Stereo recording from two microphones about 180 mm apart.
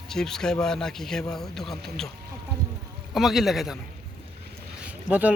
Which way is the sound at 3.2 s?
Centre (ahead or behind).